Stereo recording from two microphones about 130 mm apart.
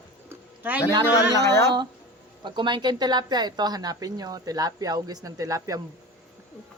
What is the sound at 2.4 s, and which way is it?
A woman's voice, 35° right (ahead or behind).